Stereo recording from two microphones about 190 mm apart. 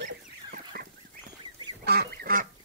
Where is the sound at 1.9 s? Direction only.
50° right (ahead or behind).